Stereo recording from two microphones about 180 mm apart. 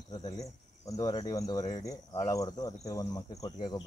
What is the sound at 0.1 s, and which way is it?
Cricket, 20° left (ahead or behind).